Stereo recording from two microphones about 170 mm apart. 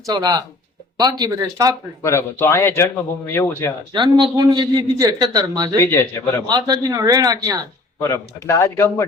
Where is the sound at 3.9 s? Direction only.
25° right (ahead or behind).